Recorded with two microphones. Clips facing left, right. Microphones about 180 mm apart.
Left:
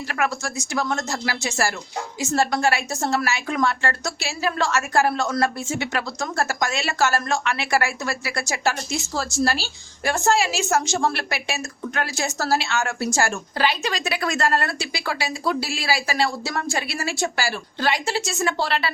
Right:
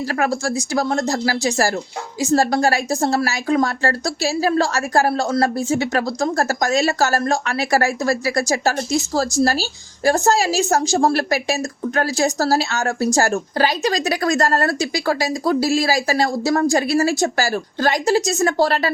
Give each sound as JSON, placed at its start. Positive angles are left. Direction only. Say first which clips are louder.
{"t": 0.1, "sound": "speech", "louder": "right 4 dB", "side_deg": -35}